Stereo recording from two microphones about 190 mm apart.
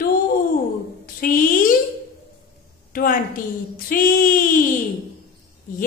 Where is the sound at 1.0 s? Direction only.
50° left (ahead or behind).